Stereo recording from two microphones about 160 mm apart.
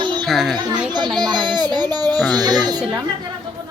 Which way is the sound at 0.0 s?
30° right (ahead or behind).